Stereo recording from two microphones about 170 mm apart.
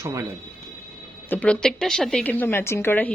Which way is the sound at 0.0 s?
20° right (ahead or behind).